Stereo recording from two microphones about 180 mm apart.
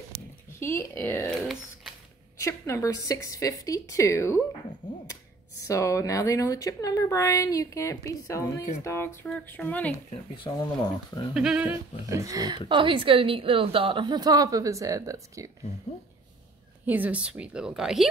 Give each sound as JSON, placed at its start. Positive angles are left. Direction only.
{"t": 0.1, "sound": "a sound", "side_deg": -50}
{"t": 0.9, "sound": "a woman's voice", "side_deg": 15}
{"t": 1.3, "sound": "speech", "side_deg": 0}
{"t": 2.3, "sound": "a woman's voice", "side_deg": 15}
{"t": 5.6, "sound": "a woman's voice", "side_deg": 15}
{"t": 10.4, "sound": "speech", "side_deg": 25}
{"t": 11.3, "sound": "a woman's voice", "side_deg": -5}
{"t": 12.1, "sound": "a woman's voice", "side_deg": -20}
{"t": 16.8, "sound": "a woman's voice", "side_deg": -10}